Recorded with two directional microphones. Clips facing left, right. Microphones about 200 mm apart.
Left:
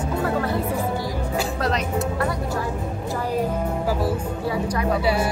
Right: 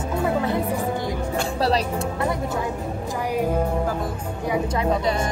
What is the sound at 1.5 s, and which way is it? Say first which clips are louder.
Music: right 4 dB; 30° right (ahead or behind).